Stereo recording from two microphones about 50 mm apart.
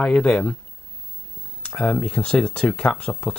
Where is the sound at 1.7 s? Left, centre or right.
Centre.